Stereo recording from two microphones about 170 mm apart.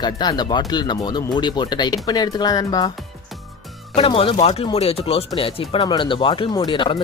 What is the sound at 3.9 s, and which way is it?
Speech, 35° left (ahead or behind).